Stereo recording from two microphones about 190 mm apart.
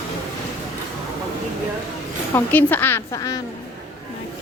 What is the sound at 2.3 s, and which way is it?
A woman's voice, 10° left (ahead or behind).